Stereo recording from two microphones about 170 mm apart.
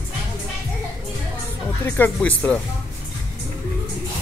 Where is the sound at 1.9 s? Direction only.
10° left (ahead or behind).